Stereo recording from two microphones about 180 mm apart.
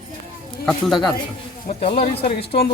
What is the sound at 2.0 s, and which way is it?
Speech, 35° left (ahead or behind).